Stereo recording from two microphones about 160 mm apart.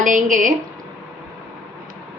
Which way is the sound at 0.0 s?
55° right (ahead or behind).